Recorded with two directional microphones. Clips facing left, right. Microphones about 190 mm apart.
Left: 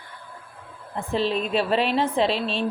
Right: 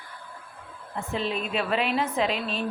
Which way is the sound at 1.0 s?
35° left (ahead or behind).